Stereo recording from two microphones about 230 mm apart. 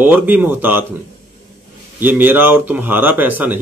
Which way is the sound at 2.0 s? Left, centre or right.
Centre.